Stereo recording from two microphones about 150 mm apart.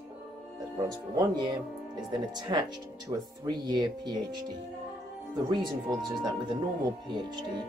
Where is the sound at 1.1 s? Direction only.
25° right (ahead or behind).